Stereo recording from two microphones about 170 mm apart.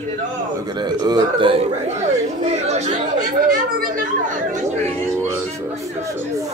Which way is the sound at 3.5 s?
55° right (ahead or behind).